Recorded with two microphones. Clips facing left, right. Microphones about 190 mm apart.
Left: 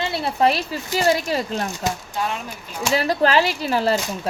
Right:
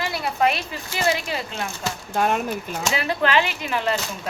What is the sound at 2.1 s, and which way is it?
Speech, 55° right (ahead or behind).